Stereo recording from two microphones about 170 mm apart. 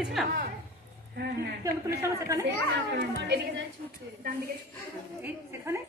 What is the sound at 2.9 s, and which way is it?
Speech, 85° right.